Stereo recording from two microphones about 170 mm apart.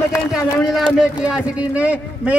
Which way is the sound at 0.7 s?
5° right (ahead or behind).